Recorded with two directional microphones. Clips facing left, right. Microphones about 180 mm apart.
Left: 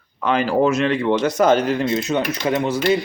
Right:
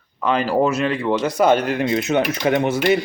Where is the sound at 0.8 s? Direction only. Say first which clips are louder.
Left 2 dB; centre (ahead or behind).